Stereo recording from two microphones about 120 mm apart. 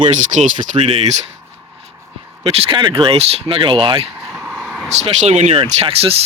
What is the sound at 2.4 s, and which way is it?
Speech, 55° right (ahead or behind).